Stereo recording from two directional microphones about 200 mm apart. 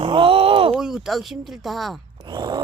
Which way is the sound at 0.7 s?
5° right (ahead or behind).